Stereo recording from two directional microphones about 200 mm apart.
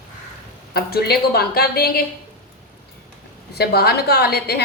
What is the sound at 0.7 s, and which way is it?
A woman's voice, 50° left (ahead or behind).